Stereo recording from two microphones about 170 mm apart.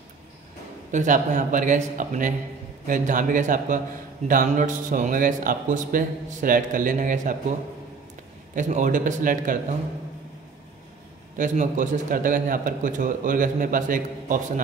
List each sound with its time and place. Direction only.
0.9 s a man's voice: 50° right (ahead or behind)
8.5 s a man's voice: 50° right (ahead or behind)
11.3 s a man's voice: 45° right (ahead or behind)